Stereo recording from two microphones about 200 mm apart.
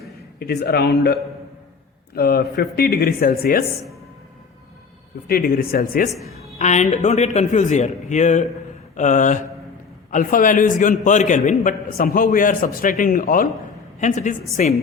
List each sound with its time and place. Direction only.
0.3 s a man's voice: 50° left (ahead or behind)
5.3 s a man's voice: 50° left (ahead or behind)
6.6 s a man's voice: 35° left (ahead or behind)